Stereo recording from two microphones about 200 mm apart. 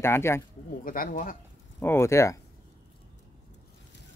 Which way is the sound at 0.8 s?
45° left (ahead or behind).